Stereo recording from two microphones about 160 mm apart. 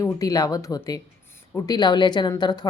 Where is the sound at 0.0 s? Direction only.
20° left (ahead or behind).